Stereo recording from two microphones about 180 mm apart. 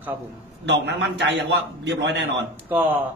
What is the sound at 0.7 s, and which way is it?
A man's voice, 70° right (ahead or behind).